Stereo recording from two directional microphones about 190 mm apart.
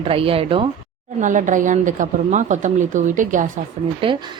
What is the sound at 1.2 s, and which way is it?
Speech, 40° right (ahead or behind).